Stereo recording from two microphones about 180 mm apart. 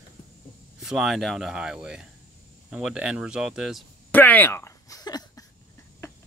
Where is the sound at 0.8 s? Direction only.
Centre (ahead or behind).